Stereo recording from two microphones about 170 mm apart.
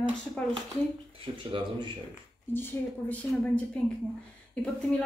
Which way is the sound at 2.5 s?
10° left (ahead or behind).